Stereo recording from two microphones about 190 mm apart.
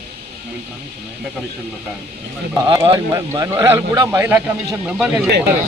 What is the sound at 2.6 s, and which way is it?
Speech, 25° right (ahead or behind).